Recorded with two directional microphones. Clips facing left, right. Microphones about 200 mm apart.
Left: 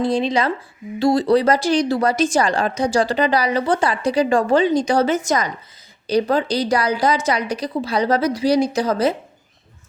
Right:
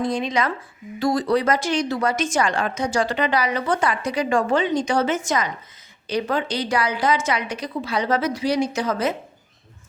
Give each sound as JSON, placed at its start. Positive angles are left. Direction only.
{"t": 0.0, "sound": "a woman's voice", "side_deg": 30}